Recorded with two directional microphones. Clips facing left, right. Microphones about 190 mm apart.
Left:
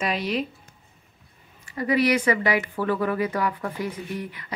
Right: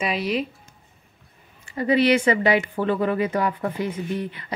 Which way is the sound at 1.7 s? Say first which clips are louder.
Right 3 dB; 25° right (ahead or behind).